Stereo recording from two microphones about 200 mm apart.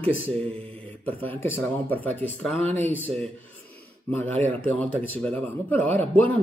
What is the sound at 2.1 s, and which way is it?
Speech, 10° left (ahead or behind).